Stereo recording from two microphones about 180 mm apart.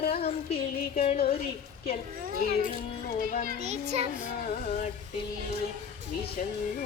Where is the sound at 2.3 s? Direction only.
55° right (ahead or behind).